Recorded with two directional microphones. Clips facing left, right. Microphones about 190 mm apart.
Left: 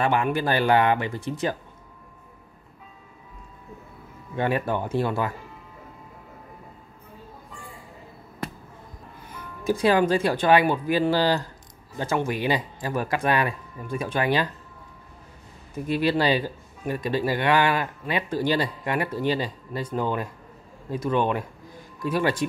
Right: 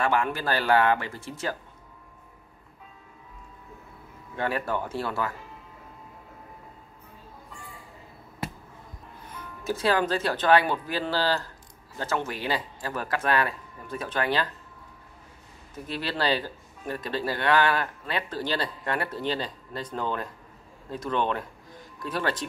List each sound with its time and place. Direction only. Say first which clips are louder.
0.0 s speech: left 3 dB; 20° left (ahead or behind)
4.4 s speech: left 4 dB; 20° left (ahead or behind)
9.7 s speech: left 5 dB; 15° left (ahead or behind)
15.7 s speech: left 9 dB; 15° left (ahead or behind)